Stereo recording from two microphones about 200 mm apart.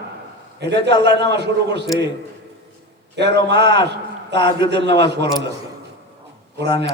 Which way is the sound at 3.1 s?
55° right (ahead or behind).